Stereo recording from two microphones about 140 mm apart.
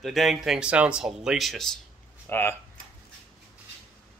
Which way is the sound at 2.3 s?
15° left (ahead or behind).